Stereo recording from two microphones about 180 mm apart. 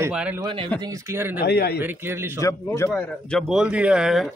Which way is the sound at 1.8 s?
15° right (ahead or behind).